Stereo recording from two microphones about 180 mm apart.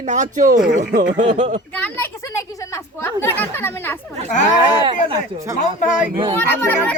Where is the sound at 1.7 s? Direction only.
10° left (ahead or behind).